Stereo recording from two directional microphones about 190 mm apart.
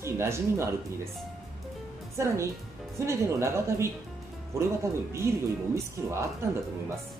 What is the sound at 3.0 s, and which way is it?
Speech, 15° right (ahead or behind).